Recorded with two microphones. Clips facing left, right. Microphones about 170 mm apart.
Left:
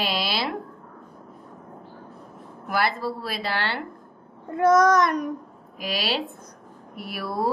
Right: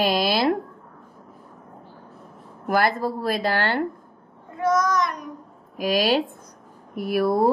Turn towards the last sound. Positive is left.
turn(degrees=-50)  # may be behind; listen again after turning